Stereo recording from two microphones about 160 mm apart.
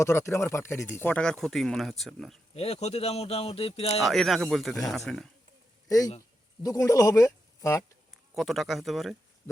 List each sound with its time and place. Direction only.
0.0 s speech: 20° left (ahead or behind); by 2.4 s centre (ahead or behind)
2.6 s speech: 40° left (ahead or behind)
4.0 s speech: centre (ahead or behind)
6.1 s speech: 20° left (ahead or behind)
8.4 s speech: centre (ahead or behind)